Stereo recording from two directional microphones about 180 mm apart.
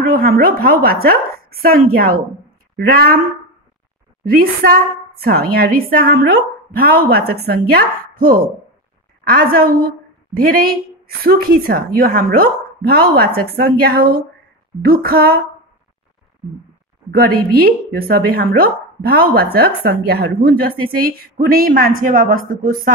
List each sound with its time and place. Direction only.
0.1 s a woman's voice: 55° right (ahead or behind)
4.2 s a woman's voice: 55° right (ahead or behind)
17.1 s a woman's voice: 55° right (ahead or behind)